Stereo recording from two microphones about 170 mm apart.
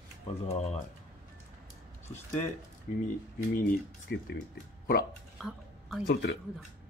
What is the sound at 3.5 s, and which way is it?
Speech, 60° left (ahead or behind).